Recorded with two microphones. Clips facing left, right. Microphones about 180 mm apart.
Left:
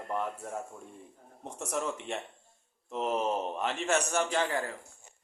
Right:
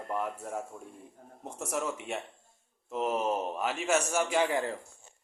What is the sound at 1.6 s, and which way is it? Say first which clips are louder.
Speech: even; 5° right (ahead or behind).